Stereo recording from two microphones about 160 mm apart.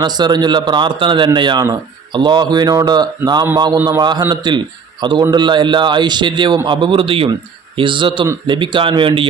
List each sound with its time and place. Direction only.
0.0 s a man's voice: 25° right (ahead or behind)